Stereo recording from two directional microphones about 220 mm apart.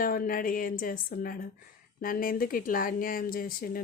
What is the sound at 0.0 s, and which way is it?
Speech, 40° left (ahead or behind).